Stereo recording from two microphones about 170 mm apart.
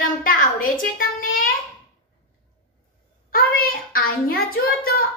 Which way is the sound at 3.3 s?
60° left (ahead or behind).